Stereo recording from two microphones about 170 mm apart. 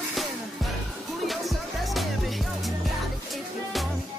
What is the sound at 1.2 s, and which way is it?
Music, centre (ahead or behind).